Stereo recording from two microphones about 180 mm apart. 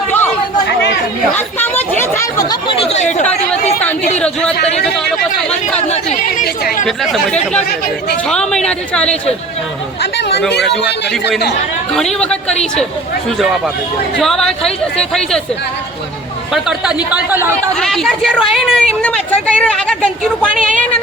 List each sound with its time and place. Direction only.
1.3 s speech: 10° left (ahead or behind); by 3.2 s 40° left (ahead or behind)
4.2 s speech: 5° left (ahead or behind)
5.9 s speech: 35° left (ahead or behind)
6.4 s chatter: 60° left (ahead or behind)
6.8 s speech: centre (ahead or behind)
10.0 s speech: 70° left (ahead or behind)
11.9 s speech: 5° left (ahead or behind)
14.2 s speech: centre (ahead or behind)
16.5 s speech: 5° right (ahead or behind)
17.7 s speech: centre (ahead or behind)